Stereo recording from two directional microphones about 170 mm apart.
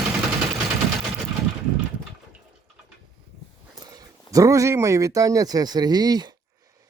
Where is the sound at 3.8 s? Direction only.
20° right (ahead or behind).